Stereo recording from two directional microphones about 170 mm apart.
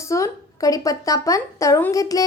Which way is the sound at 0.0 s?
20° left (ahead or behind).